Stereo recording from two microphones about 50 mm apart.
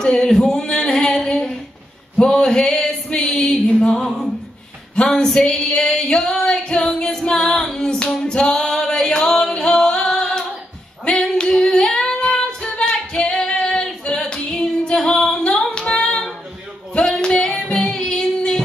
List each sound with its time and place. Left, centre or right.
0.0 s singing: centre
0.4 s a sound: centre
2.2 s singing: centre
4.9 s female singing: centre
17.0 s singing: centre
17.3 s music: centre